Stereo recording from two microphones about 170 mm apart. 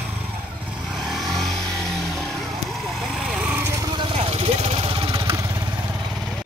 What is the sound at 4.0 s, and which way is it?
Vehicle, 35° right (ahead or behind).